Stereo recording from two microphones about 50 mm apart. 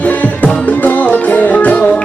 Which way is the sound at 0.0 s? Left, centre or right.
Left.